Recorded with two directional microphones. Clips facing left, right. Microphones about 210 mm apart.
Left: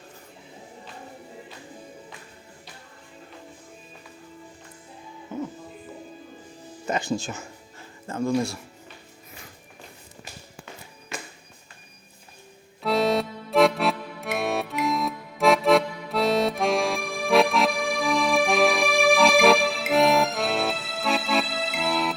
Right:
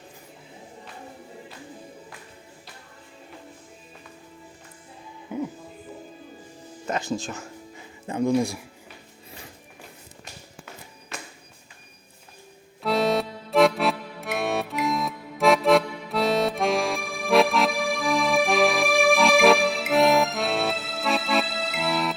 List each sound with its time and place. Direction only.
5.3 s music: 10° right (ahead or behind)
6.8 s speech: centre (ahead or behind)
8.0 s speech: 15° right (ahead or behind)
12.8 s music: centre (ahead or behind)